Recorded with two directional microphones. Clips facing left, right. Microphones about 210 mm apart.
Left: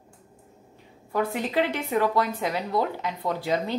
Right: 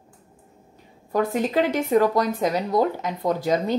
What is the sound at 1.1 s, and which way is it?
Speech, 40° right (ahead or behind).